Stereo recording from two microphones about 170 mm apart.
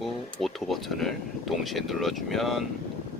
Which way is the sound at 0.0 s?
Centre (ahead or behind).